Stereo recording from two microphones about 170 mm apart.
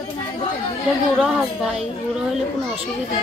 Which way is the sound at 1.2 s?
5° right (ahead or behind).